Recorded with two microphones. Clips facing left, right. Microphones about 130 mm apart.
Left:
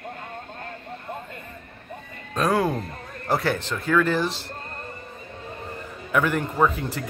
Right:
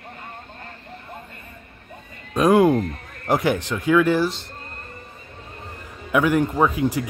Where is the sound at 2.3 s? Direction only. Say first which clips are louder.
Right 7 dB; 15° right (ahead or behind).